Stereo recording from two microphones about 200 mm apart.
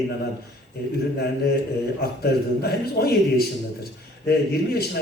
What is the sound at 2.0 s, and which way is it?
Speech, 50° left (ahead or behind).